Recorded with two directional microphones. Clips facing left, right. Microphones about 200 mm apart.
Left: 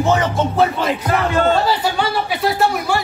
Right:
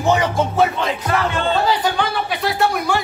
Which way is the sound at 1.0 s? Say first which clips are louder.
Left 4 dB; 40° left (ahead or behind).